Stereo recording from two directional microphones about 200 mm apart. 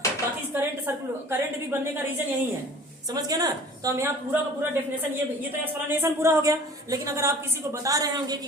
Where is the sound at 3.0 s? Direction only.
20° right (ahead or behind).